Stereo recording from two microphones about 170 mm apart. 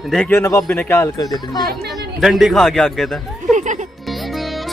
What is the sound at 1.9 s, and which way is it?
Speech, centre (ahead or behind).